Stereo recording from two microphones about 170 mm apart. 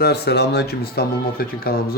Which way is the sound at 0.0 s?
75° left (ahead or behind).